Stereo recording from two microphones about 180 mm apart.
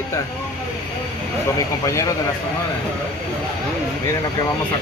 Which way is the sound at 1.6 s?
20° left (ahead or behind).